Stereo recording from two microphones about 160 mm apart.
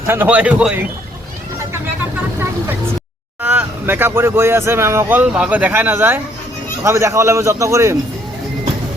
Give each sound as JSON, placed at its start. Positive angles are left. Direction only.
{"t": 0.1, "sound": "speech", "side_deg": -10}
{"t": 3.4, "sound": "speech", "side_deg": -10}